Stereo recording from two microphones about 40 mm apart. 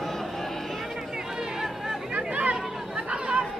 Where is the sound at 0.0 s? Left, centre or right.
Centre.